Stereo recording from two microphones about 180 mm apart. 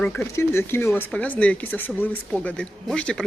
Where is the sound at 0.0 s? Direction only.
10° left (ahead or behind).